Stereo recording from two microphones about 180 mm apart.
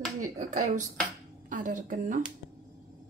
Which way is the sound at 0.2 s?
45° right (ahead or behind).